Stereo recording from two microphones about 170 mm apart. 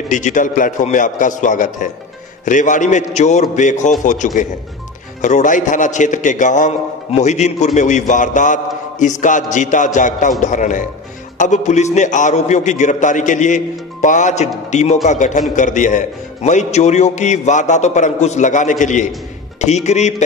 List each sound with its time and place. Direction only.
0.1 s a man's voice: 50° left (ahead or behind)